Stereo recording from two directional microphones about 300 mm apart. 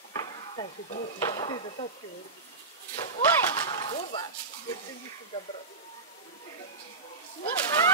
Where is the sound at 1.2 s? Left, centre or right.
Centre.